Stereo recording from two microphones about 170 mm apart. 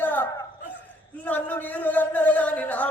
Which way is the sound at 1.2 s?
10° left (ahead or behind).